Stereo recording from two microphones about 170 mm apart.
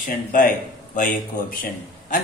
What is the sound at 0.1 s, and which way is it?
Speech, 55° left (ahead or behind).